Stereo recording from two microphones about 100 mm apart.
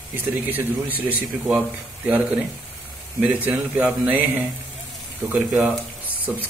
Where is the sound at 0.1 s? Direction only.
20° right (ahead or behind).